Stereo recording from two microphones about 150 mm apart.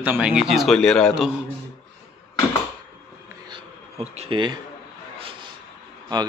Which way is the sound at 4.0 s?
40° right (ahead or behind).